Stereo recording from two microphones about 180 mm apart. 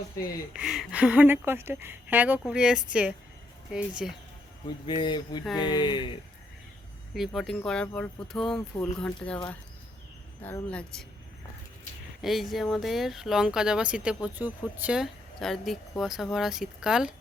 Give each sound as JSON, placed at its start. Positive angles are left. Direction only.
{"t": 0.5, "sound": "speech", "side_deg": 0}
{"t": 4.9, "sound": "speech", "side_deg": 25}
{"t": 7.1, "sound": "speech", "side_deg": 0}
{"t": 10.4, "sound": "speech", "side_deg": 10}
{"t": 12.2, "sound": "speech", "side_deg": 0}